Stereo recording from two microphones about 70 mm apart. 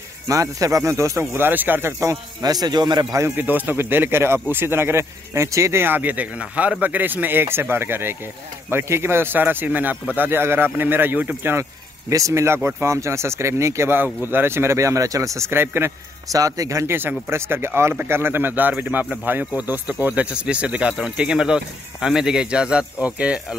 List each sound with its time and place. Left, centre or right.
0.3 s speech: right
1.3 s speech: right
2.4 s a man's voice: right
3.1 s speech: right
3.3 s speech: right
5.9 s a man's voice: right
12.1 s speech: right
16.3 s a man's voice: right
16.8 s a man's voice: right
20.2 s speech: centre